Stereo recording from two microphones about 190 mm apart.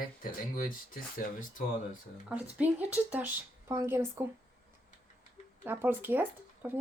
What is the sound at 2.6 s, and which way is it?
Speech, 10° right (ahead or behind).